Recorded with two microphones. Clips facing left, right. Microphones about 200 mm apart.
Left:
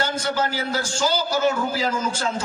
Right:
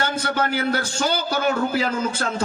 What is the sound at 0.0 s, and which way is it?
A man's voice, 60° right (ahead or behind).